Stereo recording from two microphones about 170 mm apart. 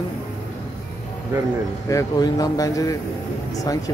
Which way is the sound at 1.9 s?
20° left (ahead or behind).